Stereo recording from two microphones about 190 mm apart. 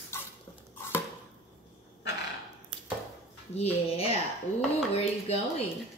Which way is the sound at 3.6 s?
30° left (ahead or behind).